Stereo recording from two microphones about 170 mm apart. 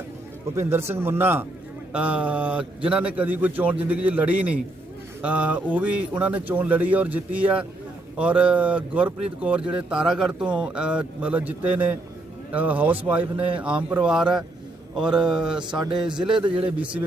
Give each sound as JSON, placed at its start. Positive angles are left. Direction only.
{"t": 0.5, "sound": "a man's voice", "side_deg": -15}
{"t": 15.7, "sound": "a man's voice", "side_deg": -25}
{"t": 16.6, "sound": "speech", "side_deg": -10}